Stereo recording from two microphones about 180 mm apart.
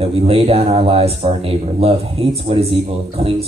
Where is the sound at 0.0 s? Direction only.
35° right (ahead or behind).